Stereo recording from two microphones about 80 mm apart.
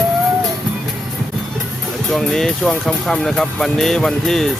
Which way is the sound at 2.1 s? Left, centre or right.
Centre.